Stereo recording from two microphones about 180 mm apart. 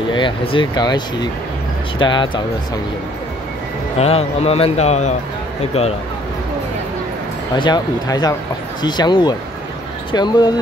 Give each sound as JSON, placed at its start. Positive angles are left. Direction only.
{"t": 0.1, "sound": "speech", "side_deg": 25}
{"t": 4.0, "sound": "speech", "side_deg": 35}
{"t": 7.5, "sound": "speech", "side_deg": 25}